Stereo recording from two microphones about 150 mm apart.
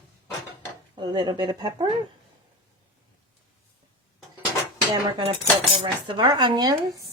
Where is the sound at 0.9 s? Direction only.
30° right (ahead or behind).